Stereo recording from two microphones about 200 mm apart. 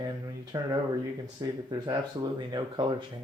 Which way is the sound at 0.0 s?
20° right (ahead or behind).